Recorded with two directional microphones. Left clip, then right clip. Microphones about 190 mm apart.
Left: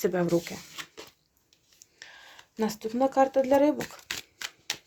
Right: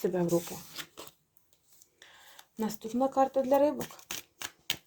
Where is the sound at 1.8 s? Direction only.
40° left (ahead or behind).